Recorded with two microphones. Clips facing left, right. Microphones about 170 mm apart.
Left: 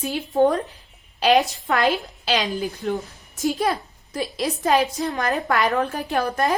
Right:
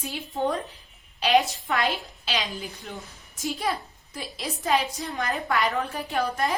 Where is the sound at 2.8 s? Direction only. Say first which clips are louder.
Left 17 dB; 55° left (ahead or behind).